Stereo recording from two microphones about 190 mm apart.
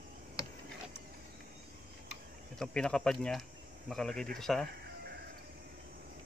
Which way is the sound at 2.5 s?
5° left (ahead or behind).